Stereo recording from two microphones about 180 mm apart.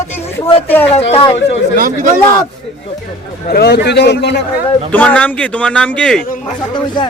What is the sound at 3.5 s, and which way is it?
Speech, 65° left (ahead or behind).